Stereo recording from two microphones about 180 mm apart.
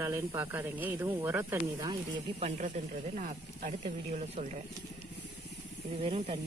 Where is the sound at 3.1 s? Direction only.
45° right (ahead or behind).